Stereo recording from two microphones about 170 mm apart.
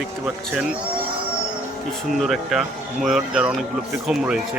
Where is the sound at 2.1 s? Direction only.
Centre (ahead or behind).